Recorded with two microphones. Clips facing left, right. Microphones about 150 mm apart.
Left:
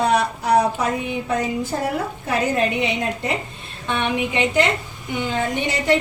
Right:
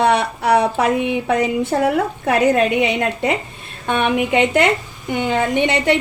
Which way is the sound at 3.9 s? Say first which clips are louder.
Right 5 dB; 55° right (ahead or behind).